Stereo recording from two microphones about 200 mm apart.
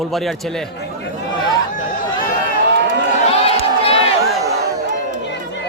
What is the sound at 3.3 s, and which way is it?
Crowd, 30° left (ahead or behind).